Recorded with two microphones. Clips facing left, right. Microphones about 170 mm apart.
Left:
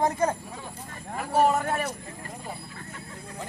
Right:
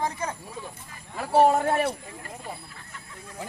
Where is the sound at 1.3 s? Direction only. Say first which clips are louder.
Right 3 dB; 30° right (ahead or behind).